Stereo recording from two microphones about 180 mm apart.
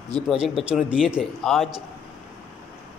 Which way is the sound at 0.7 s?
5° right (ahead or behind).